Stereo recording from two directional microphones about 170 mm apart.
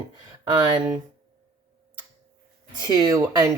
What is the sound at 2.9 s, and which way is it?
Speech, 20° right (ahead or behind).